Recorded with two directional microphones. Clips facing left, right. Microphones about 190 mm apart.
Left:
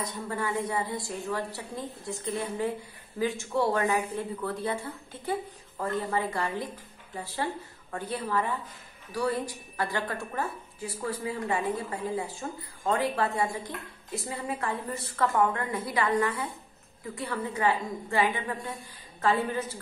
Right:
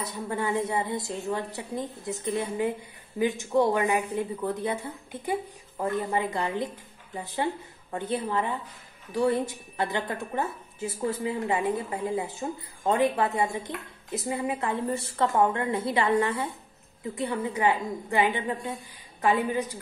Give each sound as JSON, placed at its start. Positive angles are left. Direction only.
{"t": 0.3, "sound": "a woman's voice", "side_deg": -25}